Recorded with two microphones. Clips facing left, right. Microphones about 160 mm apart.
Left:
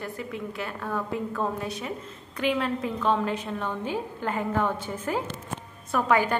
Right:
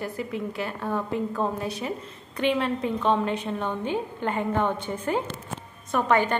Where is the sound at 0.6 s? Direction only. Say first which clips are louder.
Right 1 dB; centre (ahead or behind).